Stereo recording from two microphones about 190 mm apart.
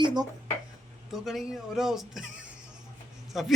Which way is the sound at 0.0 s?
20° right (ahead or behind).